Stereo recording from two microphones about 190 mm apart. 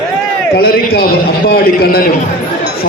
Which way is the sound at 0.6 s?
55° left (ahead or behind).